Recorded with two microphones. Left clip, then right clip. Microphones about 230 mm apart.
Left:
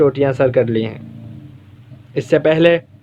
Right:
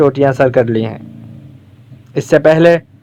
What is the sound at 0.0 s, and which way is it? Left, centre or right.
Speech, right.